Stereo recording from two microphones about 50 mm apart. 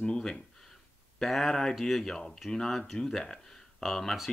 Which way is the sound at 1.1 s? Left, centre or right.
Centre.